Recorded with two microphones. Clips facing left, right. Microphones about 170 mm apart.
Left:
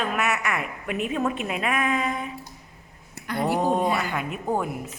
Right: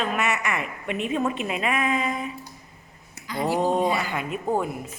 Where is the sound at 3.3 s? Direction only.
60° left (ahead or behind).